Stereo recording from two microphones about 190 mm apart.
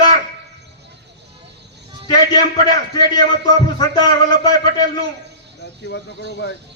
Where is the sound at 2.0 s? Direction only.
20° left (ahead or behind).